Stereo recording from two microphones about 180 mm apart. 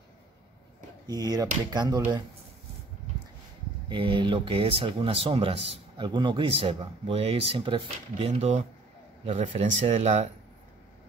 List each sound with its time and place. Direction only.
1.0 s speech: 20° right (ahead or behind)
3.9 s speech: 25° right (ahead or behind)